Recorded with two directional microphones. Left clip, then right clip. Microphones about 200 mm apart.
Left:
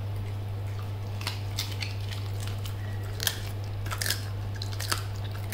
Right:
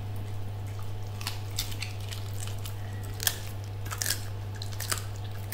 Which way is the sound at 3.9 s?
Centre (ahead or behind).